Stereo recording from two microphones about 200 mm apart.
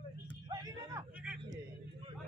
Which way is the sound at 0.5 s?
20° right (ahead or behind).